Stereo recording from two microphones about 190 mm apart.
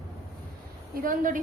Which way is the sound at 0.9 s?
45° right (ahead or behind).